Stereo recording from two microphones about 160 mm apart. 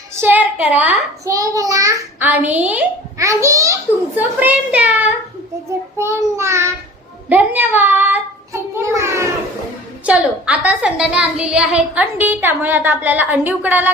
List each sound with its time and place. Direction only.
0.2 s a woman's voice: 10° right (ahead or behind)
1.3 s a child's voice: 20° right (ahead or behind)